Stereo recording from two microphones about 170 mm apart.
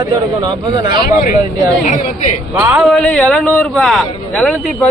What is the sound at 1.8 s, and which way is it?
Speech, 50° left (ahead or behind).